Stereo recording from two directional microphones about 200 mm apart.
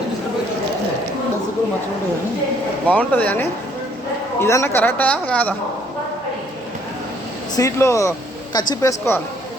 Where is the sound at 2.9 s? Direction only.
5° left (ahead or behind).